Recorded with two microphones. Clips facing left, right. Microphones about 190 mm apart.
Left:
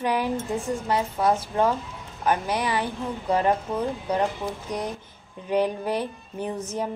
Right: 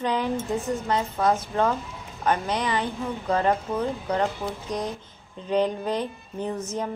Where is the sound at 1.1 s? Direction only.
10° left (ahead or behind).